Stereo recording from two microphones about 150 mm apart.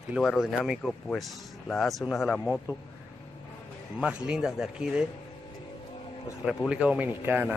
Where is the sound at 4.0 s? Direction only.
5° right (ahead or behind).